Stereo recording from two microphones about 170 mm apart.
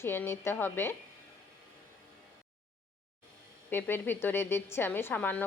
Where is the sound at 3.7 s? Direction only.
15° left (ahead or behind).